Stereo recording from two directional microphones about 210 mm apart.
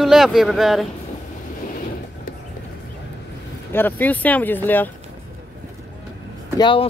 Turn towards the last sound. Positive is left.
turn(degrees=25)  # may be behind; listen again after turning